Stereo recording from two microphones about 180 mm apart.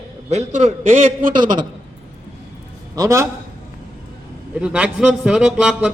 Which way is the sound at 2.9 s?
15° right (ahead or behind).